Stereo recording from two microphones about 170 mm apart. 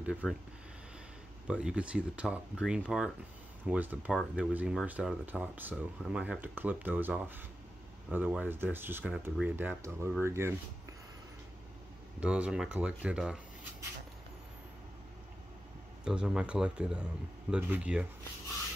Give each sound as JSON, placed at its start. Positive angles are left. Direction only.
{"t": 0.0, "sound": "speech", "side_deg": -5}
{"t": 1.5, "sound": "speech", "side_deg": -5}
{"t": 12.2, "sound": "speech", "side_deg": -5}
{"t": 16.0, "sound": "speech", "side_deg": -5}